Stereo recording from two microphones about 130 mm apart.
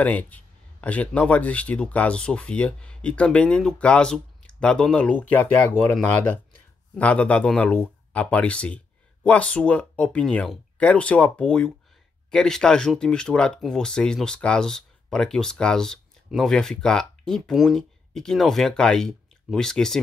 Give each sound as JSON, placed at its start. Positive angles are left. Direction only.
{"t": 0.0, "sound": "speech", "side_deg": 10}